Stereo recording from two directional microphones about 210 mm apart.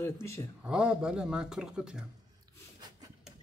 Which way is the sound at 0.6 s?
5° right (ahead or behind).